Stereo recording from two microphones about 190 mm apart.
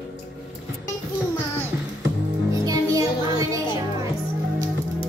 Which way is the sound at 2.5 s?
15° right (ahead or behind).